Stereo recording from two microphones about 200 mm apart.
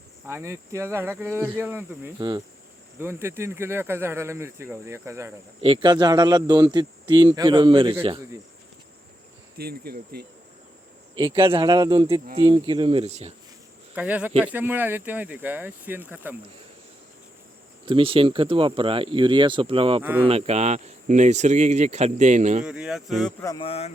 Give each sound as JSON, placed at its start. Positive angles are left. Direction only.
{"t": 0.3, "sound": "speech", "side_deg": -15}
{"t": 9.6, "sound": "speech", "side_deg": -50}
{"t": 11.2, "sound": "speech", "side_deg": -25}
{"t": 13.9, "sound": "speech", "side_deg": -5}
{"t": 17.8, "sound": "speech", "side_deg": -25}
{"t": 20.0, "sound": "speech", "side_deg": -10}
{"t": 20.2, "sound": "speech", "side_deg": -30}
{"t": 22.6, "sound": "speech", "side_deg": -5}
{"t": 23.4, "sound": "speech", "side_deg": 15}
{"t": 23.6, "sound": "speech", "side_deg": 30}